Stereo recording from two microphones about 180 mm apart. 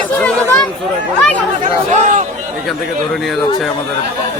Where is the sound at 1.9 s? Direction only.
45° right (ahead or behind).